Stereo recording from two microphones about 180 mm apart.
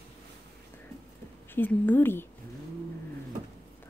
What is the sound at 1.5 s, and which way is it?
Speech, 10° left (ahead or behind).